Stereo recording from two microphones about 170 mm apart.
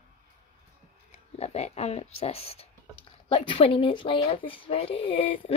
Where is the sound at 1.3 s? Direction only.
40° left (ahead or behind).